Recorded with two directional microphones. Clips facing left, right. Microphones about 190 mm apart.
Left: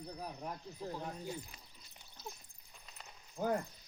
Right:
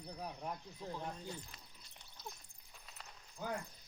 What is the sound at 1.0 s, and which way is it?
Speech, 10° left (ahead or behind).